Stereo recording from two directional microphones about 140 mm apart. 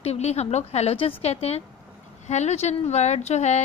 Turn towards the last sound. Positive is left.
turn(degrees=55)  # may be behind; listen again after turning